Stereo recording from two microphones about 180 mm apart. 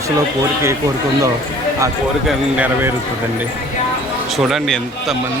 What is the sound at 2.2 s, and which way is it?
Speech, 10° right (ahead or behind).